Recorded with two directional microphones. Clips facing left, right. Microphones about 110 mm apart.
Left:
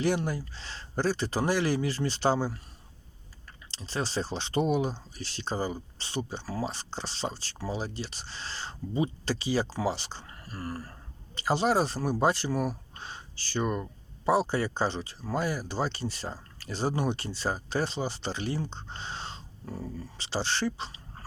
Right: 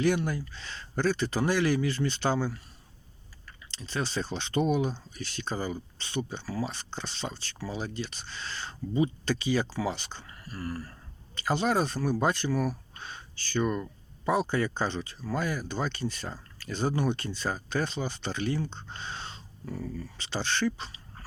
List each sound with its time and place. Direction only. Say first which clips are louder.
0.0 s speech: right 1 dB; 25° left (ahead or behind)
3.7 s speech: even; 30° left (ahead or behind)
11.3 s speech: left 1 dB; 30° left (ahead or behind)